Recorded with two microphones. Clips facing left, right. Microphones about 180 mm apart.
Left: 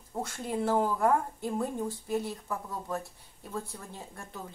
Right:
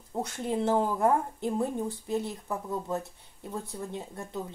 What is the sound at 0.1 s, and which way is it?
Speech, 20° right (ahead or behind).